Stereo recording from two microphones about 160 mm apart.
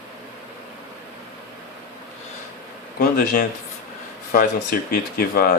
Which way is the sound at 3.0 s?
65° left (ahead or behind).